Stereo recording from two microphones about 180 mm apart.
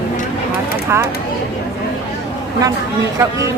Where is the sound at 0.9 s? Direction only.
15° right (ahead or behind).